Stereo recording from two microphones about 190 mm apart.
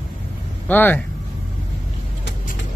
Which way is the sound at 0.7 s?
10° left (ahead or behind).